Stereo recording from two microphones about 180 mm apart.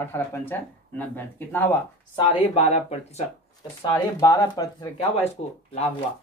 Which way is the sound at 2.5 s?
35° left (ahead or behind).